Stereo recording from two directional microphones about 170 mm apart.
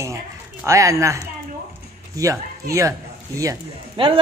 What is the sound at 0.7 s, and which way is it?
Speech, 20° right (ahead or behind).